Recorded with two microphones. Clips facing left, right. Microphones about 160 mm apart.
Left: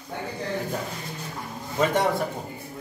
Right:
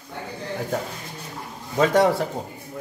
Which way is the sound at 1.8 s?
90° right.